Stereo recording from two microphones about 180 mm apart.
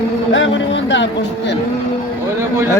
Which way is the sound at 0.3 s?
85° left.